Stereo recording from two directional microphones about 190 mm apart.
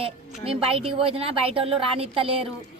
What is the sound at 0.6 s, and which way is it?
Speech, 30° right (ahead or behind).